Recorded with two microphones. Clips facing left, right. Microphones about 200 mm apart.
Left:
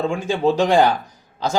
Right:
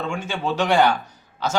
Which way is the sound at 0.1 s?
35° left (ahead or behind).